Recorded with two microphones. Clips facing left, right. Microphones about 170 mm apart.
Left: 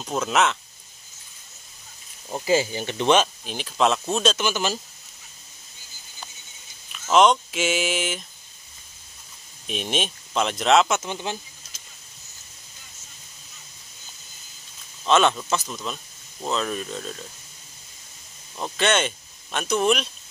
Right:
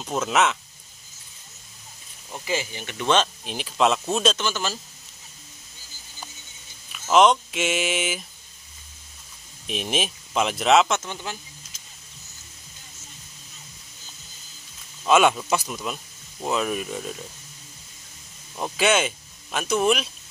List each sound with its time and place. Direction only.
0.0 s speech: centre (ahead or behind)
2.2 s speech: 35° left (ahead or behind)
3.4 s speech: centre (ahead or behind)
4.4 s speech: 15° left (ahead or behind)
6.9 s speech: centre (ahead or behind)
9.7 s speech: centre (ahead or behind)
11.0 s speech: 15° left (ahead or behind)
15.0 s speech: 10° right (ahead or behind)
18.6 s speech: 5° right (ahead or behind)